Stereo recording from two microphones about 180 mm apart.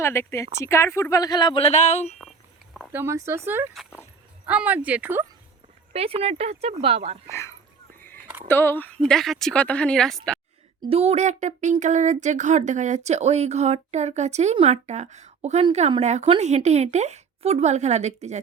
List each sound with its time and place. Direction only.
0.0 s speech: 15° left (ahead or behind); by 2.1 s 35° left (ahead or behind)
2.9 s speech: 15° right (ahead or behind)
5.9 s speech: 35° right (ahead or behind)
7.3 s a woman's voice: 15° left (ahead or behind)
10.8 s speech: 30° right (ahead or behind)